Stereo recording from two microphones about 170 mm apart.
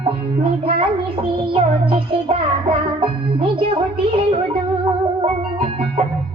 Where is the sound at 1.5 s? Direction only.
30° right (ahead or behind).